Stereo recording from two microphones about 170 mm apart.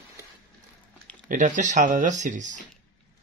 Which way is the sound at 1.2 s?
50° right (ahead or behind).